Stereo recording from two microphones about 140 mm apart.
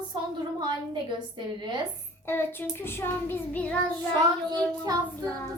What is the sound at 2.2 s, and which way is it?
Child singing, 15° left (ahead or behind).